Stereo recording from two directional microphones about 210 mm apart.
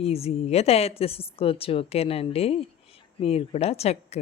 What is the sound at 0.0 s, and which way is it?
Speech, 30° left (ahead or behind).